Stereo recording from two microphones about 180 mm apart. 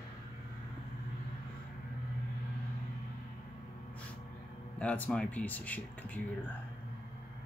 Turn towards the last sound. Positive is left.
turn(degrees=10)  # may be behind; listen again after turning